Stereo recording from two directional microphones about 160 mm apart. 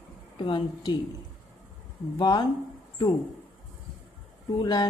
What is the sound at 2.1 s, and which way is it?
Speech, 25° left (ahead or behind).